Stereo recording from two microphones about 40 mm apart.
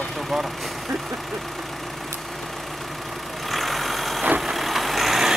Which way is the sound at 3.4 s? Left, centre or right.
Centre.